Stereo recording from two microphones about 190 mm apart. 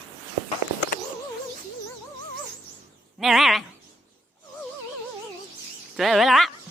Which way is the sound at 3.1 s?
Centre (ahead or behind).